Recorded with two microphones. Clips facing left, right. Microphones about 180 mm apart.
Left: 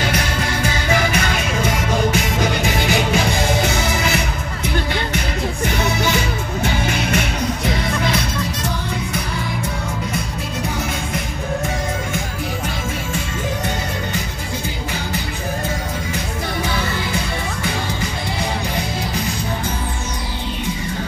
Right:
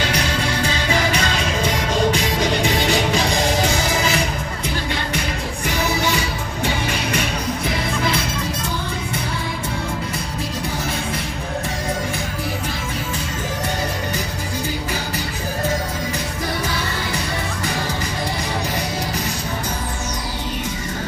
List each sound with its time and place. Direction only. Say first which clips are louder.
2.1 s music: even; 60° left (ahead or behind)